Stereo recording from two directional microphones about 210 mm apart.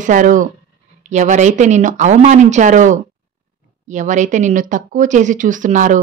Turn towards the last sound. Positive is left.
turn(degrees=-35)  # may be behind; listen again after turning